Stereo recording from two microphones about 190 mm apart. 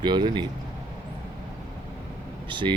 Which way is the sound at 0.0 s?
25° right (ahead or behind).